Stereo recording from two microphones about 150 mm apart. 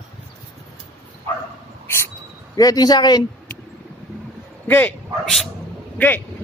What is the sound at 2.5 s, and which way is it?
Speech, 25° left (ahead or behind).